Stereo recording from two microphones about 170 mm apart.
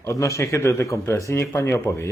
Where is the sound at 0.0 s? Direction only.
15° left (ahead or behind).